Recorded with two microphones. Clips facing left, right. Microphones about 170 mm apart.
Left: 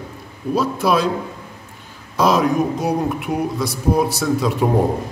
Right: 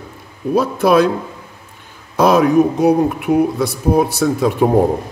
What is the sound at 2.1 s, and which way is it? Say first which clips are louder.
Speech: right 5 dB; 55° right (ahead or behind).